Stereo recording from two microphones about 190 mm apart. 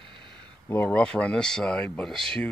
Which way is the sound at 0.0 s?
65° left (ahead or behind).